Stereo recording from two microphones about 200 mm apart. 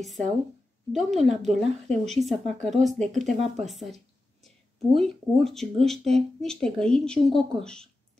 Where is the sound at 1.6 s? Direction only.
Centre (ahead or behind).